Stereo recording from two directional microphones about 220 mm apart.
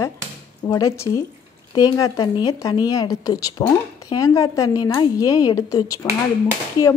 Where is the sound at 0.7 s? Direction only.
15° left (ahead or behind).